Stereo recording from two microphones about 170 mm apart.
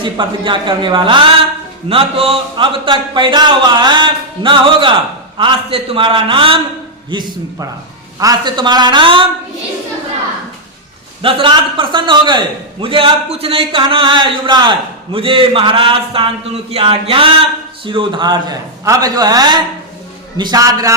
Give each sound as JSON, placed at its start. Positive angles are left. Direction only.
{"t": 0.0, "sound": "a man's voice", "side_deg": -30}
{"t": 11.2, "sound": "a man's voice", "side_deg": -30}